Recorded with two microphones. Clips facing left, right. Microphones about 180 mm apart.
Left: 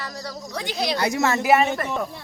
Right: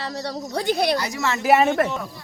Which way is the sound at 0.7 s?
60° right (ahead or behind).